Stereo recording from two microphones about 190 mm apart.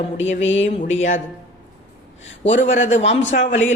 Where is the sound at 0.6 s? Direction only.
40° left (ahead or behind).